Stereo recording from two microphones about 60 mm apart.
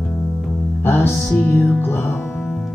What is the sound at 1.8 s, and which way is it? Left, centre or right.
Music, left.